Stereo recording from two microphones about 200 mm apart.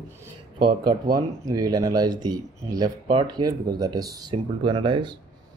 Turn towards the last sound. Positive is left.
turn(degrees=-25)  # may be behind; listen again after turning